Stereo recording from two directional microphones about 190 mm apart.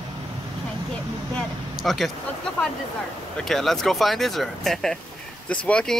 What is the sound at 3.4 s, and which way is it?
Speech, centre (ahead or behind).